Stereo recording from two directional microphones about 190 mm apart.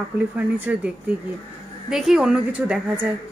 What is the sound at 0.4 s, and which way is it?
A woman's voice, 5° right (ahead or behind).